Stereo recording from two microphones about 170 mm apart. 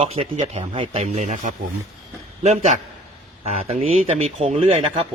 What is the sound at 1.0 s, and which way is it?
Speech, 45° right (ahead or behind).